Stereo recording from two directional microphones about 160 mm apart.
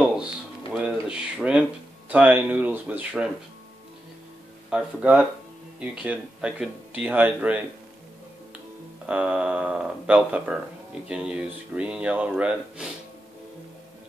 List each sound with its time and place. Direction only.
0.7 s a sound: 5° right (ahead or behind)
4.6 s speech: 5° right (ahead or behind)
9.0 s speech: 10° right (ahead or behind)